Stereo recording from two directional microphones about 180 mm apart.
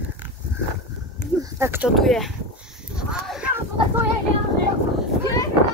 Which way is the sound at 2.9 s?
5° right (ahead or behind).